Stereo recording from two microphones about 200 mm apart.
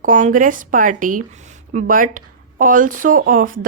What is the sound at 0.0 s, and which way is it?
A woman's voice, 40° right (ahead or behind).